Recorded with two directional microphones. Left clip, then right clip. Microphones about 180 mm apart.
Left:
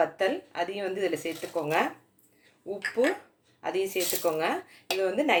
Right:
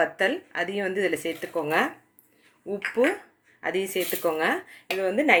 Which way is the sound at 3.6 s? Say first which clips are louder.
Right 2 dB; 40° right (ahead or behind).